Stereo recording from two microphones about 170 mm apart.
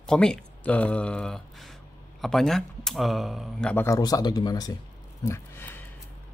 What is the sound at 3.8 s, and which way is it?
Speech, 20° left (ahead or behind).